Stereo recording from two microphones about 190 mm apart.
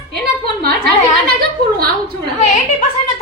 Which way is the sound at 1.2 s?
55° right (ahead or behind).